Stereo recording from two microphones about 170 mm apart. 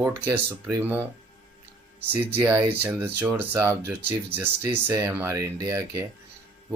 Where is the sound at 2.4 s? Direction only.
10° right (ahead or behind).